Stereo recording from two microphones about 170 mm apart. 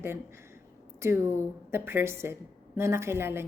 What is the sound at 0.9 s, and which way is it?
A woman's voice, 15° right (ahead or behind).